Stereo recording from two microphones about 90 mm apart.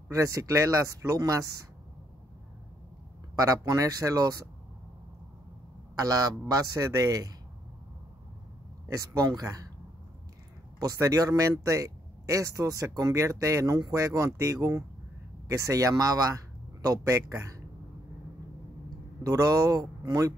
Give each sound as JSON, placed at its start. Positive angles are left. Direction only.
{"t": 0.1, "sound": "speech", "side_deg": -35}
{"t": 3.3, "sound": "speech", "side_deg": -40}
{"t": 5.9, "sound": "speech", "side_deg": -45}
{"t": 8.8, "sound": "speech", "side_deg": -40}
{"t": 10.8, "sound": "a man's voice", "side_deg": -40}
{"t": 19.2, "sound": "speech", "side_deg": -40}